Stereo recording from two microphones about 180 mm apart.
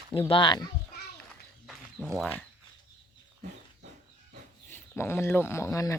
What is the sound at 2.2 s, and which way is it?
Speech, 5° left (ahead or behind).